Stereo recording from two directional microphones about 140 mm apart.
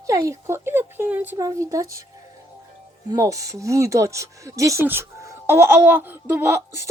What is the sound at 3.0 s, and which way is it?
Speech, 25° right (ahead or behind).